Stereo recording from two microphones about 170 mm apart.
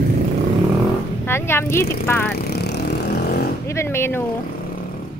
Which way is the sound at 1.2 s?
15° left (ahead or behind).